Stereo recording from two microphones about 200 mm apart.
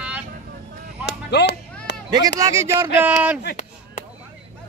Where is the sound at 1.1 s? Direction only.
60° left (ahead or behind).